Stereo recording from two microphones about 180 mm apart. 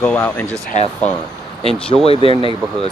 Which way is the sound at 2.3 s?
30° right (ahead or behind).